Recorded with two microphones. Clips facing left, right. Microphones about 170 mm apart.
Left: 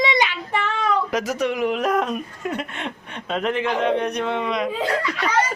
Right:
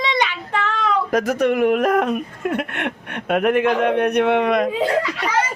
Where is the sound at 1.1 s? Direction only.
55° right (ahead or behind).